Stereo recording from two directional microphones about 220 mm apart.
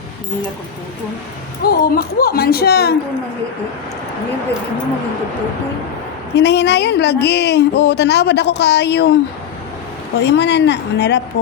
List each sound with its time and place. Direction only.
1.6 s speech: 45° left (ahead or behind)
6.3 s speech: 50° left (ahead or behind)
10.2 s speech: 50° left (ahead or behind)